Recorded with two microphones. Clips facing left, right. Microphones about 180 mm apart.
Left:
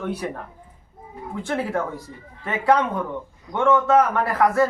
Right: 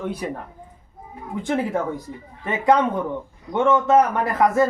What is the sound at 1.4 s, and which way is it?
A man's voice, 15° right (ahead or behind).